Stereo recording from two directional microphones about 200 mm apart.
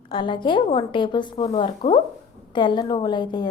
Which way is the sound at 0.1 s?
25° left (ahead or behind).